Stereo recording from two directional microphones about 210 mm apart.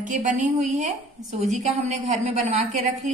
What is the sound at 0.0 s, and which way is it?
A woman's voice, 40° right (ahead or behind).